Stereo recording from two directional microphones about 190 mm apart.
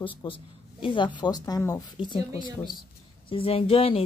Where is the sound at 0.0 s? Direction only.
25° left (ahead or behind).